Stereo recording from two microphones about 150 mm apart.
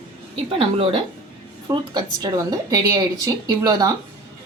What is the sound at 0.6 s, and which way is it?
A woman's voice, 35° right (ahead or behind).